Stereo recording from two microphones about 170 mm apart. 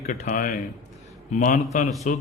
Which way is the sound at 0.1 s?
50° left (ahead or behind).